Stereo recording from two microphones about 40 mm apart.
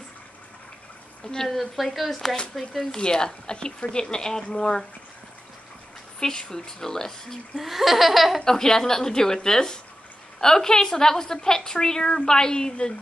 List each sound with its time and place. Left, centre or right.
1.2 s a woman's voice: centre
1.5 s laughter: centre
3.0 s speech: centre
6.1 s a woman's voice: centre
7.5 s laughter: centre
8.5 s a woman's voice: centre